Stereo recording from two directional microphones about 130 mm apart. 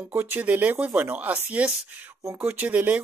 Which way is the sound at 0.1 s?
15° right (ahead or behind).